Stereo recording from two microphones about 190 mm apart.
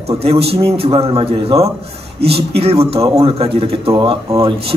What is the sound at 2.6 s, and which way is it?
A man's voice, 30° right (ahead or behind).